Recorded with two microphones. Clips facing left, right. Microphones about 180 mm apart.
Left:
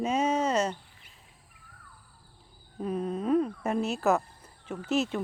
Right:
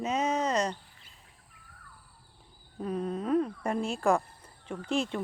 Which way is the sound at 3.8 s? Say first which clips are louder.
Right 1 dB; 5° left (ahead or behind).